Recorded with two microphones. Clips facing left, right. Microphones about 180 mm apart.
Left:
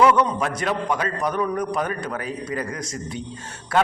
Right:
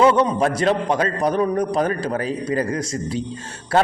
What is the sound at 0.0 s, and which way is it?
A man's voice, 25° right (ahead or behind).